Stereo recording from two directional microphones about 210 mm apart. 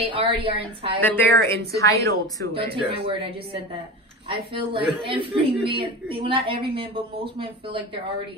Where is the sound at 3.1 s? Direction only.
25° right (ahead or behind).